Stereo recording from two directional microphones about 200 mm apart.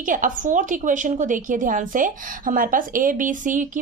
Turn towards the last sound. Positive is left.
turn(degrees=-40)  # may be behind; listen again after turning